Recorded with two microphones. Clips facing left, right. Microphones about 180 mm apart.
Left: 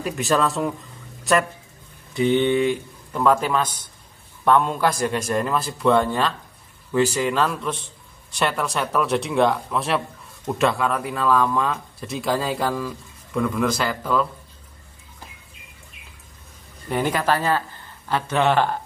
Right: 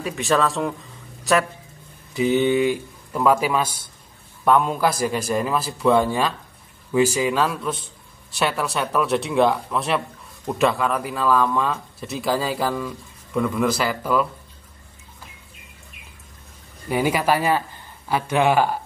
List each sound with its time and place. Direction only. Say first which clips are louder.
0.0 s speech: even; centre (ahead or behind)
16.9 s a man's voice: right 2 dB; 10° right (ahead or behind)